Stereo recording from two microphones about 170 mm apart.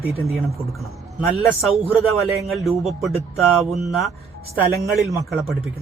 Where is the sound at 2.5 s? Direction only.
Centre (ahead or behind).